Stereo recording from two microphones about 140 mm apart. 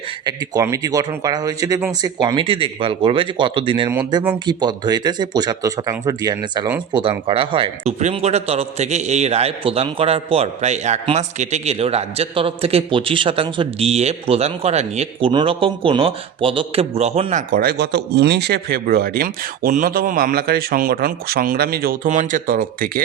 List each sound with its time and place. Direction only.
0.3 s a man's voice: 25° right (ahead or behind); by 15.3 s 50° right (ahead or behind)
15.3 s a man's voice: 35° right (ahead or behind)
17.3 s speech: 90° right